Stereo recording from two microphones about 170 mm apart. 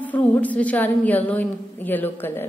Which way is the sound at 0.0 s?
10° left (ahead or behind).